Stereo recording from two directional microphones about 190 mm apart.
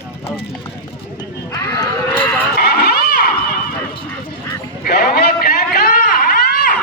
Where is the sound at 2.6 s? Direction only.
55° left (ahead or behind).